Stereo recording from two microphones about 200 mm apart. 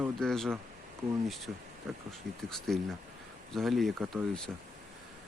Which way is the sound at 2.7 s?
Centre (ahead or behind).